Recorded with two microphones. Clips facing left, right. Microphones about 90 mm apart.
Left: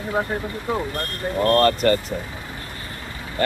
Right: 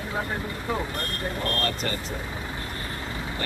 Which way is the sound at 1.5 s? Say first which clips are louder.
Left 12 dB; 65° left (ahead or behind).